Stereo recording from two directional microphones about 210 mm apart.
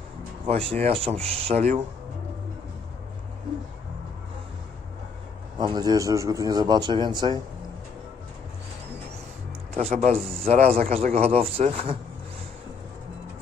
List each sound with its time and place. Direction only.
0.5 s a man's voice: 25° right (ahead or behind)
5.6 s a man's voice: 20° right (ahead or behind)
9.8 s a man's voice: 35° right (ahead or behind)